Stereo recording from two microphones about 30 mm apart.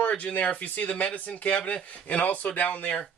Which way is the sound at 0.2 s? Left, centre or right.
Left.